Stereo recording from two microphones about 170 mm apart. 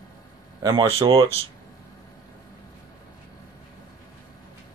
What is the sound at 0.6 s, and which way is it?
Speech, 25° right (ahead or behind).